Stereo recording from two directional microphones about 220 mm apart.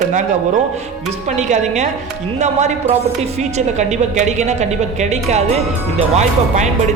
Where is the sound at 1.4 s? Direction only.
30° right (ahead or behind).